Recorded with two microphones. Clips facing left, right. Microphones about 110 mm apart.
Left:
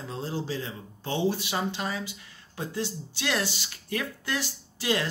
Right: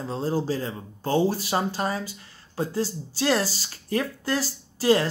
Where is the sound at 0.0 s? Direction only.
35° right (ahead or behind).